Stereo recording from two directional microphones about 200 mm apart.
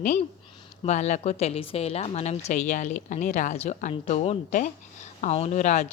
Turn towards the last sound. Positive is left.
turn(degrees=35)  # may be behind; listen again after turning